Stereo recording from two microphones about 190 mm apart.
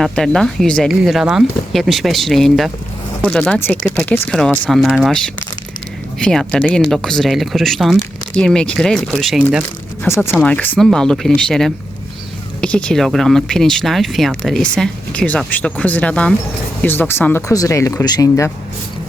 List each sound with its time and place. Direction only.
0.0 s speech: centre (ahead or behind)
10.1 s speech: 10° left (ahead or behind)